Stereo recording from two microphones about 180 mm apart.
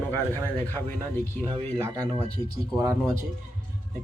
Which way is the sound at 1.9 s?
15° right (ahead or behind).